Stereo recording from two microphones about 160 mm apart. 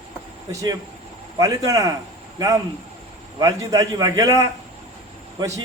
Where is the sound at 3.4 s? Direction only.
20° right (ahead or behind).